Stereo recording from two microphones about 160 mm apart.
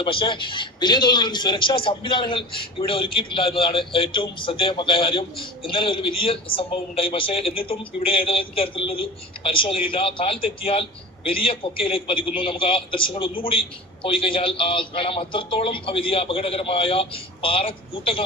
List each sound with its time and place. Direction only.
0.0 s a man's voice: 30° left (ahead or behind)